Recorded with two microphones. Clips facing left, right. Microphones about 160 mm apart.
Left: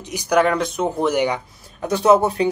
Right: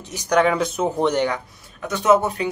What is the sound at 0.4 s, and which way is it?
Speech, centre (ahead or behind).